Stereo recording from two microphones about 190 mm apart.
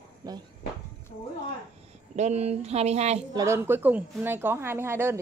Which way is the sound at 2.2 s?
35° right (ahead or behind).